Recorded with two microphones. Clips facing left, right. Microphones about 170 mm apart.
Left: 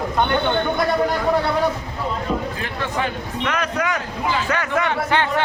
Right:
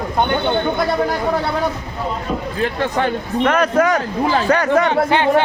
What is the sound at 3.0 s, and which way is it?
A man's voice, 50° right (ahead or behind).